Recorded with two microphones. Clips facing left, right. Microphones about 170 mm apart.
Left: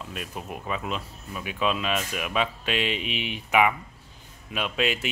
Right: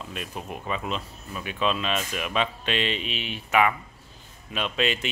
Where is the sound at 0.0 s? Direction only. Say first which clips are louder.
Right 1 dB; centre (ahead or behind).